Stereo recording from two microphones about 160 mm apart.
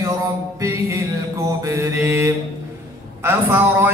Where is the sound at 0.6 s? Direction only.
20° right (ahead or behind).